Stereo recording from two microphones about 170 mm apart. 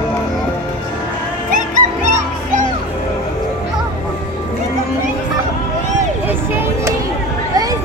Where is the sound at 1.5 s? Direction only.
50° right (ahead or behind).